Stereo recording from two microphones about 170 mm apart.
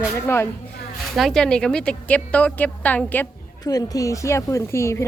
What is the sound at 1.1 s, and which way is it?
Speech, centre (ahead or behind).